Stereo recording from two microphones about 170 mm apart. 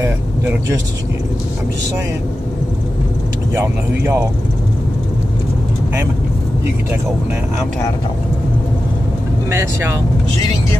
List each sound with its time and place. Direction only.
0.0 s speech: 15° right (ahead or behind)
3.5 s speech: 10° right (ahead or behind)
9.5 s speech: 15° right (ahead or behind)